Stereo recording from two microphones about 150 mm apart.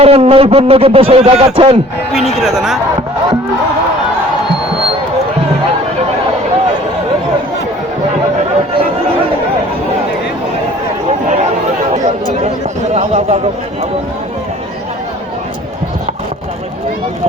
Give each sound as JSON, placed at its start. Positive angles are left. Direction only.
{"t": 0.0, "sound": "a man's voice", "side_deg": -40}
{"t": 2.1, "sound": "speech", "side_deg": 0}
{"t": 12.9, "sound": "a man's voice", "side_deg": -45}